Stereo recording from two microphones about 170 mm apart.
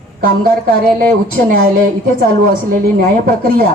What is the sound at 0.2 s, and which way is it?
A woman's voice, 60° right (ahead or behind).